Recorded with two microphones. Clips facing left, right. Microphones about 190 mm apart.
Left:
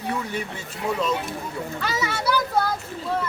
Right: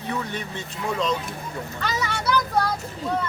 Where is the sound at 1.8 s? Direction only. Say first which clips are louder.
Even; 5° left (ahead or behind).